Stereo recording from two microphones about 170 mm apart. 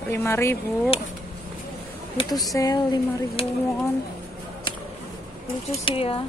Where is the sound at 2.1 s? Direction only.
20° left (ahead or behind).